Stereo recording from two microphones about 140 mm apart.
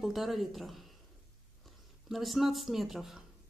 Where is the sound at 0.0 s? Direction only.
Centre (ahead or behind).